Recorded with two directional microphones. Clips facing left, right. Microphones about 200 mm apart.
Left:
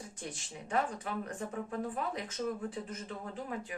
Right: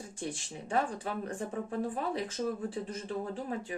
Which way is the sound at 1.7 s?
30° right (ahead or behind).